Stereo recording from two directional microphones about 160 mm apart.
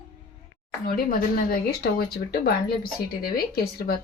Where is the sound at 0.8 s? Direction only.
65° left (ahead or behind).